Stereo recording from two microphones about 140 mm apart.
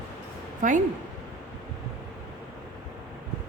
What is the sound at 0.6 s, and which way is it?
Speech, 65° right (ahead or behind).